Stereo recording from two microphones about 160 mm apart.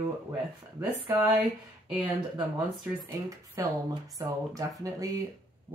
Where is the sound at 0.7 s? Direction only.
10° right (ahead or behind).